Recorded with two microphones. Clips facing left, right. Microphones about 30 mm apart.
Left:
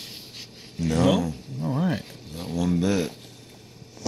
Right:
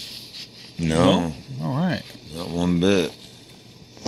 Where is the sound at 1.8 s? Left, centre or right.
Right.